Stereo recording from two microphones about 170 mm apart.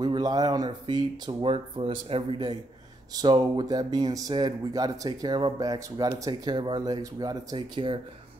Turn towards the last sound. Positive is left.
turn(degrees=-25)  # may be behind; listen again after turning